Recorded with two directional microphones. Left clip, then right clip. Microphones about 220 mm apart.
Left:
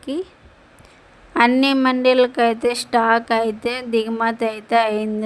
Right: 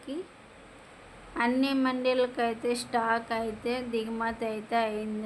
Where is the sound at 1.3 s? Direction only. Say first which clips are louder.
Left 12 dB; 40° left (ahead or behind).